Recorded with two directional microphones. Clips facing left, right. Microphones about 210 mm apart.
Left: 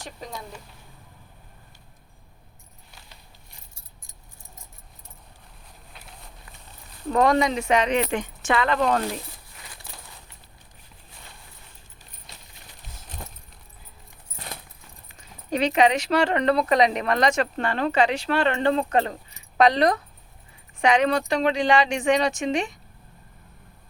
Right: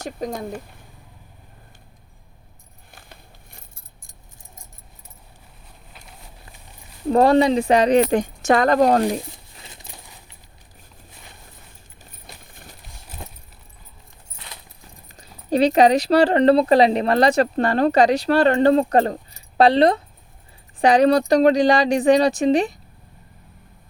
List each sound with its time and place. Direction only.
0.0 s speech: 45° right (ahead or behind)
2.9 s a sound: 55° right (ahead or behind)
5.9 s run: centre (ahead or behind)
7.1 s speech: 35° right (ahead or behind)
9.6 s a sound: 25° right (ahead or behind)
13.2 s keys jangling: 10° right (ahead or behind)
15.1 s speech: 35° right (ahead or behind)